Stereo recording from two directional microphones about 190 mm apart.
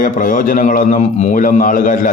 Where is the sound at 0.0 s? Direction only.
45° left (ahead or behind).